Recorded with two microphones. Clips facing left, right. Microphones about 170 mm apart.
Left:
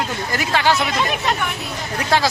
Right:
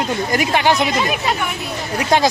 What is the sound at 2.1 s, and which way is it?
Speech, 20° right (ahead or behind).